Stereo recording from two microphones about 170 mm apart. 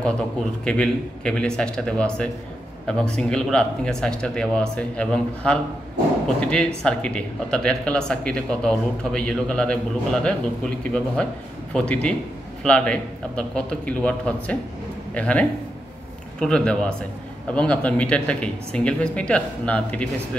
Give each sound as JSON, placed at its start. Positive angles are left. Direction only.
{"t": 0.7, "sound": "speech", "side_deg": 5}